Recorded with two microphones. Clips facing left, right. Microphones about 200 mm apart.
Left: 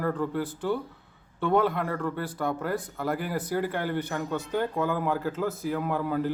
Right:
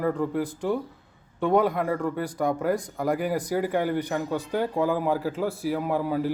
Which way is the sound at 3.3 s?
10° right (ahead or behind).